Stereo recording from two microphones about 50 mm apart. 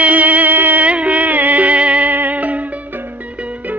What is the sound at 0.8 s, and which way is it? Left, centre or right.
Music, right.